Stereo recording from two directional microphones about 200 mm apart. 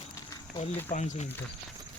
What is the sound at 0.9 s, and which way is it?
Speech, 35° left (ahead or behind).